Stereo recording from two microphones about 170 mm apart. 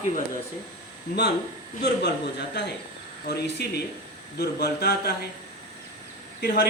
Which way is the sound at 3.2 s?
75° left (ahead or behind).